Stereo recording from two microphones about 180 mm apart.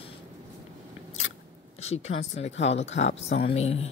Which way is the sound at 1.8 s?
35° left (ahead or behind).